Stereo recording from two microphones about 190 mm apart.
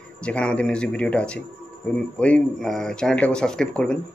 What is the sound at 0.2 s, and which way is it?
Speech, 5° left (ahead or behind).